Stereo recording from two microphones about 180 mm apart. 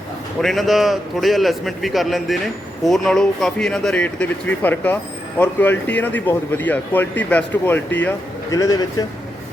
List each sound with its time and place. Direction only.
0.4 s a man's voice: centre (ahead or behind)
8.4 s speech: 20° left (ahead or behind)